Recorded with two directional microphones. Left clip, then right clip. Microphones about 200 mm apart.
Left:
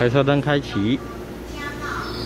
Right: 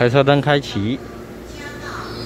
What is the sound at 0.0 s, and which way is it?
Speech, 15° right (ahead or behind).